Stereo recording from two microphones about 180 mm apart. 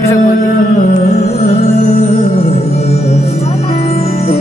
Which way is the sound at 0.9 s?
40° left (ahead or behind).